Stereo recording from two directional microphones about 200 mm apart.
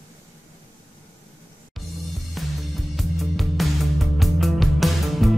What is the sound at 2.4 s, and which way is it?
Music, centre (ahead or behind).